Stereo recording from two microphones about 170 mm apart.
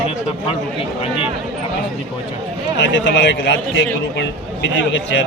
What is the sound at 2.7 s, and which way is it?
Speech, 90° left.